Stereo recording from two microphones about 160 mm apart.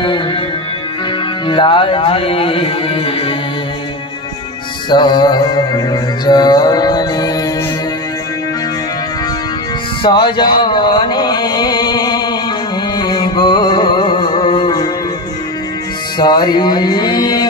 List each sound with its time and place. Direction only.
0.0 s music: 30° left (ahead or behind)
1.5 s speech: 30° left (ahead or behind)
4.8 s music: 30° left (ahead or behind)
10.0 s a sound: 30° left (ahead or behind)
12.9 s music: 25° left (ahead or behind)
16.2 s a sound: 25° left (ahead or behind)